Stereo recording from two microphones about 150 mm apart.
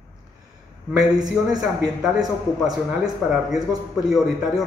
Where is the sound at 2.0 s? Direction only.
5° right (ahead or behind).